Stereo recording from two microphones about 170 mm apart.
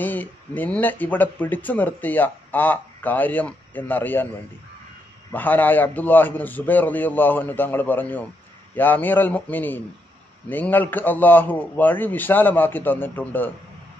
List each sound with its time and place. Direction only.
0.0 s speech: 10° left (ahead or behind)
5.3 s speech: 10° left (ahead or behind)